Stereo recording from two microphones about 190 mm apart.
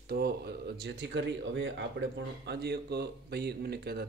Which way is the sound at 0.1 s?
60° right (ahead or behind).